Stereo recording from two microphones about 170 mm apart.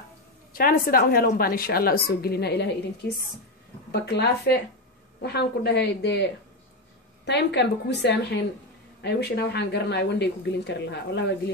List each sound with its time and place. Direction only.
0.5 s a woman's voice: 55° left (ahead or behind); by 2.7 s 75° left (ahead or behind)
3.9 s a woman's voice: 75° left (ahead or behind)
7.2 s speech: 85° left
9.0 s speech: 75° left (ahead or behind)